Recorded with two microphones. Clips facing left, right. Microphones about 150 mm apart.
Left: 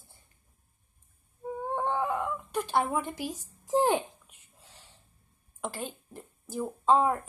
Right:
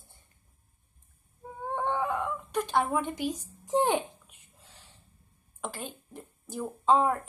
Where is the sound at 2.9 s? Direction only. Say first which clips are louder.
Right 2 dB; 10° left (ahead or behind).